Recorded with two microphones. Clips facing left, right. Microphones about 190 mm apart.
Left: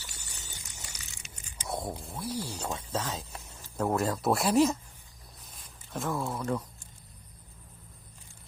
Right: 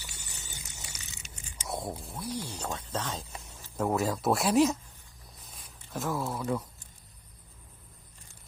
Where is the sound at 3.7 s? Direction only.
Centre (ahead or behind).